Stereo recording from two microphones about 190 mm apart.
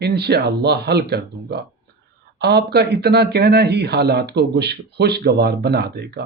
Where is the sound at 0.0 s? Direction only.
60° right (ahead or behind).